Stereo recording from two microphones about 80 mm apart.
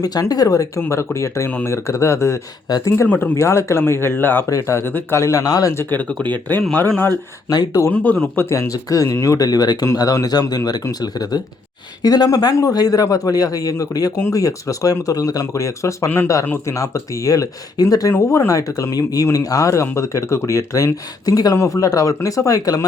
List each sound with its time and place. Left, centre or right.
0.0 s speech: left
0.8 s speech: left
2.6 s speech: left
3.1 s speech: left
3.3 s speech: left
4.4 s speech: left
5.2 s speech: left
5.7 s speech: left
6.1 s speech: centre
7.5 s speech: left
7.9 s speech: centre
8.4 s speech: left
16.0 s speech: left
16.6 s speech: left